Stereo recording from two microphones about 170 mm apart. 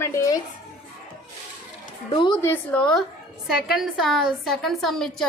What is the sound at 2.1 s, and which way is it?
Speech, 30° left (ahead or behind).